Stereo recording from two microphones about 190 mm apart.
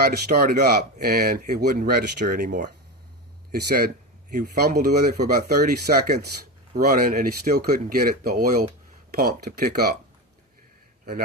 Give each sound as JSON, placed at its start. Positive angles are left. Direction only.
{"t": 0.0, "sound": "speech", "side_deg": -55}